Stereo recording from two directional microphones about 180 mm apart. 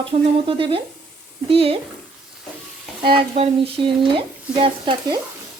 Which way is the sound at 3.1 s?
30° right (ahead or behind).